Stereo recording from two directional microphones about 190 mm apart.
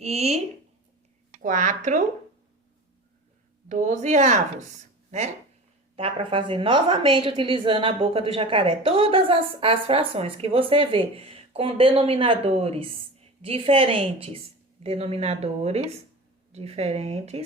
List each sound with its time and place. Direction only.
0.0 s speech: 35° right (ahead or behind)
1.4 s speech: 40° right (ahead or behind)
3.7 s speech: 40° right (ahead or behind)
6.0 s a woman's voice: 30° right (ahead or behind)